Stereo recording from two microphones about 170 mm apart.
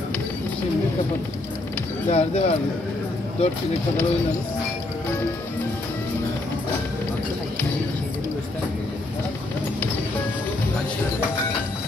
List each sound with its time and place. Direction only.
2.0 s speech: 40° left (ahead or behind)